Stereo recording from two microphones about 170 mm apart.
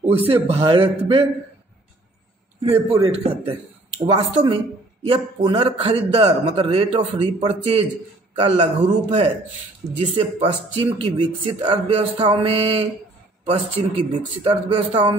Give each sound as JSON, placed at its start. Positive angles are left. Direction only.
{"t": 0.5, "sound": "speech", "side_deg": -35}
{"t": 2.9, "sound": "speech", "side_deg": -30}